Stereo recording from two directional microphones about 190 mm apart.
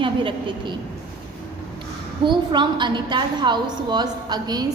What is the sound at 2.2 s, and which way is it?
A woman's voice, 25° right (ahead or behind).